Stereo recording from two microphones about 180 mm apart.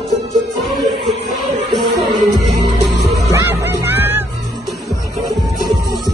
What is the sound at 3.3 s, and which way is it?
Music, 15° right (ahead or behind).